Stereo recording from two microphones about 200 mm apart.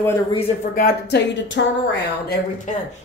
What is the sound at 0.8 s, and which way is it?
Speech, 50° left (ahead or behind).